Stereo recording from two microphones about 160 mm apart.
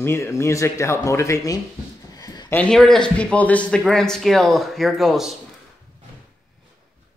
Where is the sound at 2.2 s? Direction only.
25° left (ahead or behind).